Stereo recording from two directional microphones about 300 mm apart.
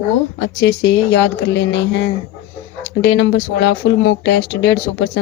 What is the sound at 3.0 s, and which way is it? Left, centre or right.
Speech, left.